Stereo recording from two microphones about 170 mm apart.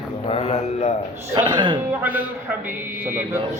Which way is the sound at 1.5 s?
25° right (ahead or behind).